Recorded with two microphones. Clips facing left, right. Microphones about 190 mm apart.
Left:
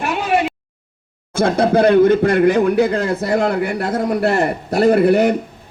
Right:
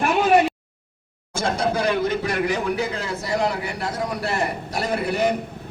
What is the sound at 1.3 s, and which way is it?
A man's voice, 55° left (ahead or behind).